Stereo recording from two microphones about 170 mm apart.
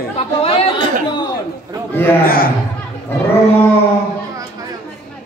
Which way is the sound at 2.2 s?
60° left (ahead or behind).